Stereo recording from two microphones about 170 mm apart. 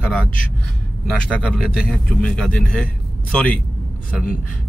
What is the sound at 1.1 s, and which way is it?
Speech, 5° left (ahead or behind).